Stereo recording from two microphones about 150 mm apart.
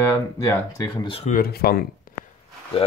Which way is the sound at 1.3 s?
90° left.